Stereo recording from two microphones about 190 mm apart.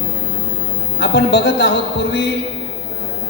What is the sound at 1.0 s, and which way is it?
Speech, 60° left (ahead or behind).